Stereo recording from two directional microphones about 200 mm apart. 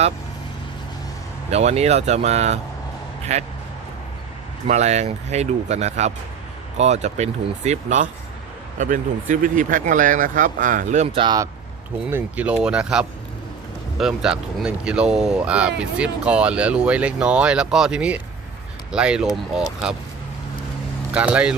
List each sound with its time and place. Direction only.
1.5 s speech: 30° right (ahead or behind)
4.7 s speech: 35° right (ahead or behind)
12.1 s speech: 5° right (ahead or behind)
21.1 s speech: 5° right (ahead or behind)